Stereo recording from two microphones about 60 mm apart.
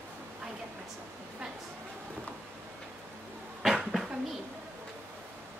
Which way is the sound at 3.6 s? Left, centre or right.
Centre.